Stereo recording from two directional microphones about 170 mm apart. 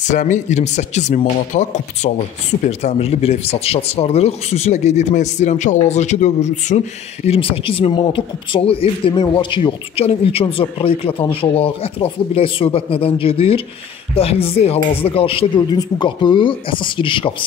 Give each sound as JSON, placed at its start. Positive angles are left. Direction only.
{"t": 0.0, "sound": "speech", "side_deg": 45}
{"t": 7.2, "sound": "speech", "side_deg": 30}